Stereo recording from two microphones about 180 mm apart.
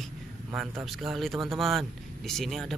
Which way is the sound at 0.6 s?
Centre (ahead or behind).